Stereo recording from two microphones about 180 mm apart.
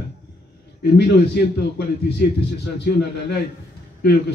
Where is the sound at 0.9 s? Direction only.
65° left (ahead or behind).